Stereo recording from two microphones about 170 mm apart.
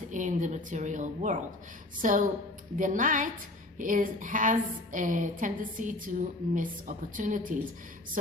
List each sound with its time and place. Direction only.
0.1 s a woman's voice: 45° right (ahead or behind)